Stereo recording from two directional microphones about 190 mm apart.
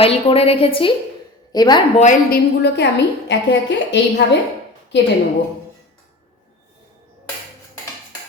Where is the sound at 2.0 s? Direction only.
40° left (ahead or behind).